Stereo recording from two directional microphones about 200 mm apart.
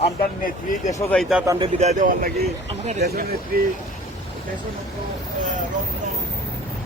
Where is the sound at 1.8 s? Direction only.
35° right (ahead or behind).